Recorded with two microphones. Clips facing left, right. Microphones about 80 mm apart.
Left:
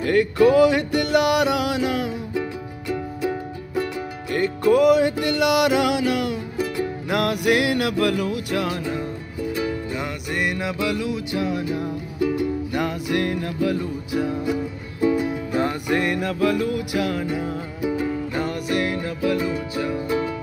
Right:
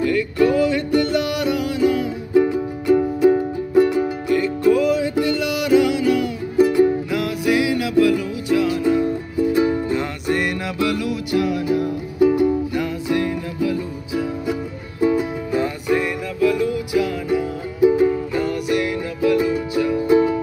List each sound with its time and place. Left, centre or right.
0.0 s music: left
2.3 s music: centre
3.7 s music: centre
4.3 s music: left
9.5 s music: right
9.9 s music: centre
12.2 s music: centre
12.7 s music: left
15.5 s music: left
17.8 s music: centre
18.3 s music: left
20.1 s music: centre